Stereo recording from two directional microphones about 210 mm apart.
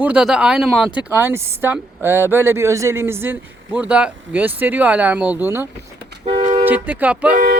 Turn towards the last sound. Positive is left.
turn(degrees=-40)  # may be behind; listen again after turning